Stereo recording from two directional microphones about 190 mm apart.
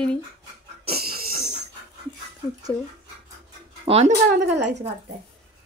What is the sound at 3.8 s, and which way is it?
Speech, 35° right (ahead or behind).